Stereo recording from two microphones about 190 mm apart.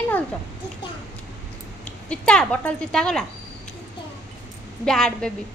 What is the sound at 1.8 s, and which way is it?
Speech, 5° left (ahead or behind).